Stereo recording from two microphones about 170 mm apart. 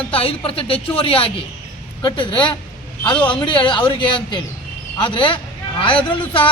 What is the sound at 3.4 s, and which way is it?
A man's voice, 30° left (ahead or behind).